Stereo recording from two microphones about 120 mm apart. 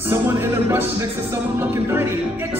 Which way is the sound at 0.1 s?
20° right (ahead or behind).